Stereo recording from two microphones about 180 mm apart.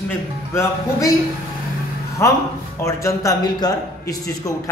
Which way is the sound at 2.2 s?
15° left (ahead or behind).